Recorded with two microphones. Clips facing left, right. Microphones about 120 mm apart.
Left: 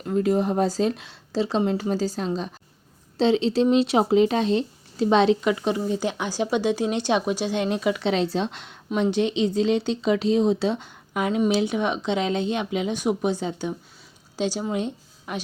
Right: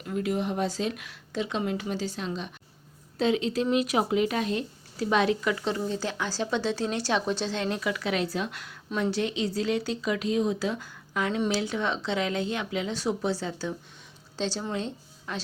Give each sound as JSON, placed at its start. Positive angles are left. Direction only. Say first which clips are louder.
{"t": 0.0, "sound": "speech", "louder": "left 7 dB", "side_deg": 35}